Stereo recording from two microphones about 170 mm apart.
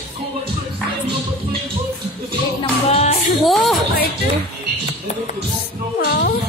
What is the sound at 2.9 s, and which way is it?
Music, 40° left (ahead or behind).